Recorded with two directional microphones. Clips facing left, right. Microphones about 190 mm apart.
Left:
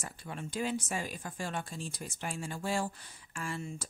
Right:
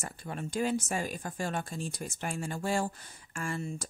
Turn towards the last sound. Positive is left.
turn(degrees=-45)  # may be behind; listen again after turning